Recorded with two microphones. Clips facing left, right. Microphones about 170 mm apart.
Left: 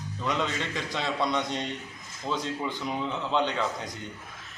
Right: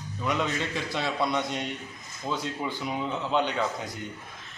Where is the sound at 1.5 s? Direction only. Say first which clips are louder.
Even; 20° left (ahead or behind).